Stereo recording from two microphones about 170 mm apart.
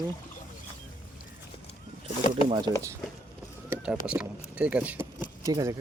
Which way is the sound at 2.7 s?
25° left (ahead or behind).